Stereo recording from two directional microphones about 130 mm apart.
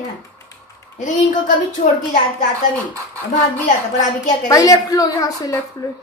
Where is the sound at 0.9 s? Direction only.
70° left (ahead or behind).